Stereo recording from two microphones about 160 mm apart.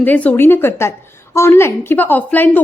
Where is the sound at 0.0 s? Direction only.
10° left (ahead or behind).